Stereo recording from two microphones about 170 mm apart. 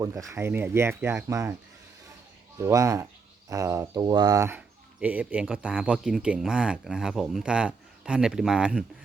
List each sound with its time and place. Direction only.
0.0 s speech: 20° right (ahead or behind)
2.6 s speech: 15° right (ahead or behind)